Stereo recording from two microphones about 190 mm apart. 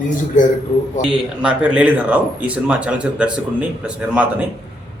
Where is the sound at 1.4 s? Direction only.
5° right (ahead or behind).